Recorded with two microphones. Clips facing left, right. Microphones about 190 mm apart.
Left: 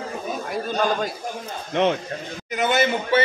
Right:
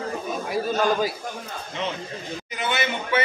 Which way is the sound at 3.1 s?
30° left (ahead or behind).